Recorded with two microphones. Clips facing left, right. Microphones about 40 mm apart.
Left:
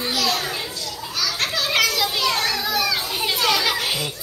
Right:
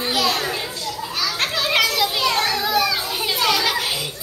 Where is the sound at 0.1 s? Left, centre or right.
Centre.